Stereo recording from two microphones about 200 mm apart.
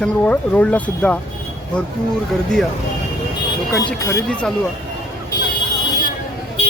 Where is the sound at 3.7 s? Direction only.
15° left (ahead or behind).